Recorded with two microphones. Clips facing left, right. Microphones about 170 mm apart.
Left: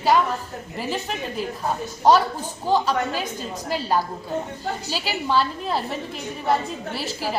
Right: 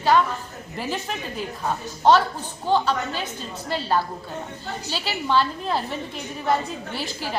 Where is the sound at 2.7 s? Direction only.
5° left (ahead or behind).